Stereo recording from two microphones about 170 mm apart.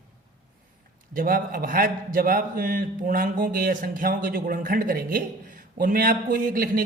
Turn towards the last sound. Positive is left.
turn(degrees=-55)  # may be behind; listen again after turning